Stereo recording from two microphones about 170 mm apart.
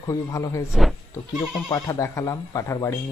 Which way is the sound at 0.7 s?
Centre (ahead or behind).